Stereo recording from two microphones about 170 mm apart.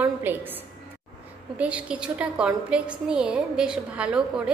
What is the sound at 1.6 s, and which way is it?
A woman's voice, 5° right (ahead or behind).